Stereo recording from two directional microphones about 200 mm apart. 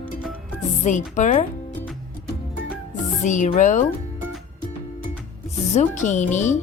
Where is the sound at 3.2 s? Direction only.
35° left (ahead or behind).